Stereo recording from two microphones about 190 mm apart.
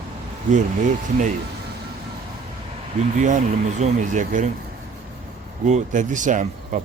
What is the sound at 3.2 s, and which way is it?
Speech, 40° right (ahead or behind).